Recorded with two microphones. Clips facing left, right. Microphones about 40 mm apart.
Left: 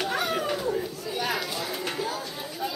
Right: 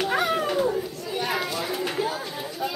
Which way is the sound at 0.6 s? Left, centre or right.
Right.